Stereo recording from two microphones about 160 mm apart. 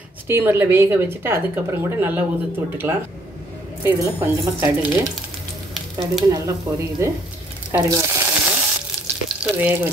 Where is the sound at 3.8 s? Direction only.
20° right (ahead or behind).